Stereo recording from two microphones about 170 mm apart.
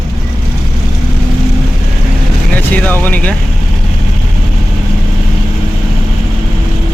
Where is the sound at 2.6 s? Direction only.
10° left (ahead or behind).